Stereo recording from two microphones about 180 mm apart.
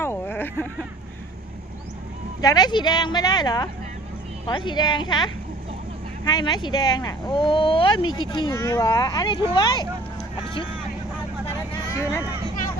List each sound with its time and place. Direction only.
0.0 s a sound: 10° left (ahead or behind)
2.4 s speech: 20° left (ahead or behind)
11.9 s speech: 15° left (ahead or behind)